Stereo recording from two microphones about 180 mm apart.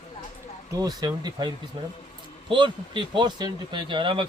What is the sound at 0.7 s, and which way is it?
Speech, 20° right (ahead or behind).